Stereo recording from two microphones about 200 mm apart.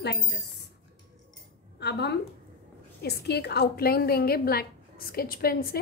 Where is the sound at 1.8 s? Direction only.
55° left (ahead or behind).